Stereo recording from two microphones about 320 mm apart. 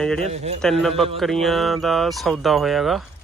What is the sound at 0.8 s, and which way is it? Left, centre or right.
Speech, centre.